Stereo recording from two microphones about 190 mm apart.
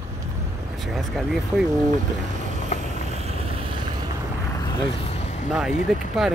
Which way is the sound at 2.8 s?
35° right (ahead or behind).